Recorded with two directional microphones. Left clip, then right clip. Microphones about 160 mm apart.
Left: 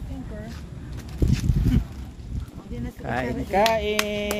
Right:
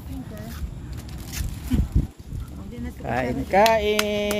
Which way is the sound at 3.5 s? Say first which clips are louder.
Right 3 dB; 90° right.